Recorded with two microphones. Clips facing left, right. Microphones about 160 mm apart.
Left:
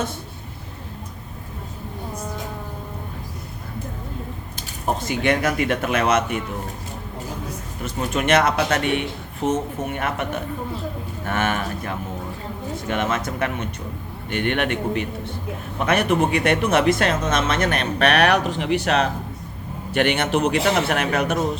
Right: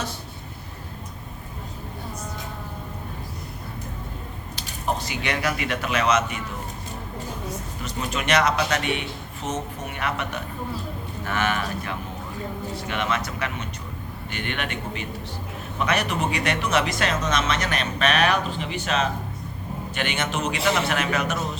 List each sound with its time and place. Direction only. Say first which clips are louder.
4.5 s speech: left 2 dB; 50° left (ahead or behind)
7.8 s a man's voice: left 6 dB; 50° left (ahead or behind)